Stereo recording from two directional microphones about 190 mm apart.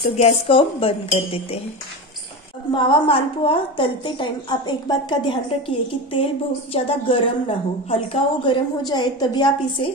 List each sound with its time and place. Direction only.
0.2 s a woman's voice: 30° left (ahead or behind)
2.7 s a woman's voice: 25° left (ahead or behind)